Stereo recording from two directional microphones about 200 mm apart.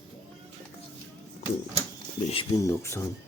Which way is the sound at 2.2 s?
30° left (ahead or behind).